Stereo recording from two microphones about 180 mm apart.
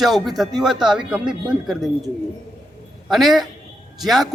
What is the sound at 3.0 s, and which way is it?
A man's voice, centre (ahead or behind).